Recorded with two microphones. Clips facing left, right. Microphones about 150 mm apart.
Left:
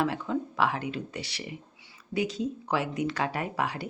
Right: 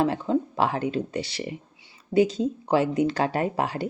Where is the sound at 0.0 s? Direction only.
30° right (ahead or behind).